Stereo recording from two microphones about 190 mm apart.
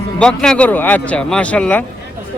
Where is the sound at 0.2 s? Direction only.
5° left (ahead or behind).